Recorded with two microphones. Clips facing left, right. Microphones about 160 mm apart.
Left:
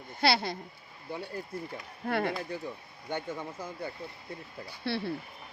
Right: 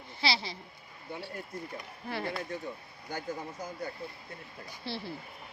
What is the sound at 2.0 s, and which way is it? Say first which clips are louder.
Speech: left 6 dB; 60° left (ahead or behind).